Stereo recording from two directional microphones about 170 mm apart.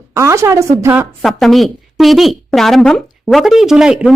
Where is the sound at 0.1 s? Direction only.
15° right (ahead or behind).